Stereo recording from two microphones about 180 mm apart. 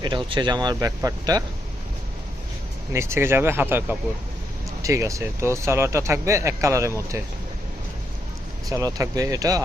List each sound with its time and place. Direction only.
0.0 s speech: 25° right (ahead or behind)
2.9 s speech: 15° right (ahead or behind)
8.7 s speech: 20° right (ahead or behind)